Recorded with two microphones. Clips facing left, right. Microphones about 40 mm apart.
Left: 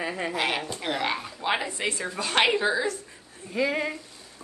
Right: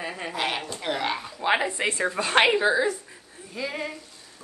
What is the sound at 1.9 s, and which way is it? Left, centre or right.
Speech, right.